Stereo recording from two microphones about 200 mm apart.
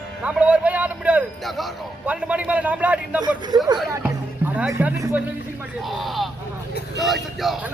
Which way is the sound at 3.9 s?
10° right (ahead or behind).